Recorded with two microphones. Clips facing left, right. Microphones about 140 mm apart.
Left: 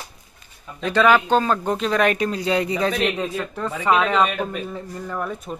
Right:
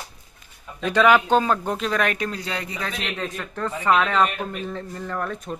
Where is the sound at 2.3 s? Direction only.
15° left (ahead or behind).